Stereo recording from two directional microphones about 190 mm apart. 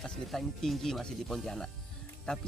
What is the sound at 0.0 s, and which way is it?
Speech, centre (ahead or behind).